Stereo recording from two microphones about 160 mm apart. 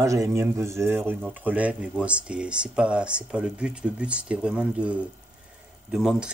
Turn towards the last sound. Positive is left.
turn(degrees=-5)  # may be behind; listen again after turning